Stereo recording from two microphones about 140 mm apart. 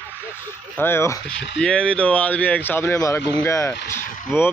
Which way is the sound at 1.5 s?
5° left (ahead or behind).